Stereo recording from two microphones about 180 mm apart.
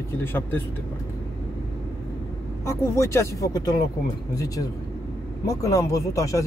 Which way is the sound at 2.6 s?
15° left (ahead or behind).